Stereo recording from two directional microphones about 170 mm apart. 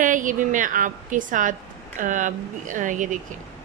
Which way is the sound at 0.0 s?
50° right (ahead or behind).